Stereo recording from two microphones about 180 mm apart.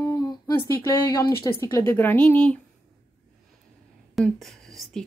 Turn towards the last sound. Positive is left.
turn(degrees=0)  # may be behind; listen again after turning